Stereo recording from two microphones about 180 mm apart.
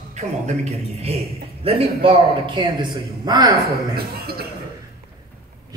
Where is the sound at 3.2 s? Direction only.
20° right (ahead or behind).